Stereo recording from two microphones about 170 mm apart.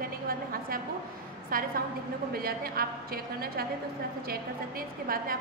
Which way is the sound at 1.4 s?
55° right (ahead or behind).